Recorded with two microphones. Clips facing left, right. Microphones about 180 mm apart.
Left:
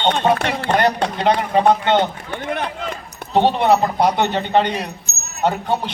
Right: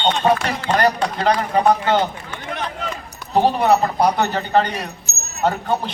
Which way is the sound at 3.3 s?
25° left (ahead or behind).